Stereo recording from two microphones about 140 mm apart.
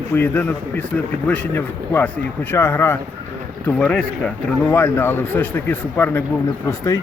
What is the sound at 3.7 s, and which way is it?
Speech, 5° left (ahead or behind).